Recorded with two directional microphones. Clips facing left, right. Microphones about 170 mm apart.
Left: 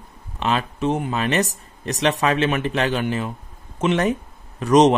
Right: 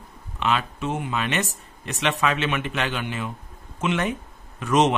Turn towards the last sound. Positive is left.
turn(degrees=40)  # may be behind; listen again after turning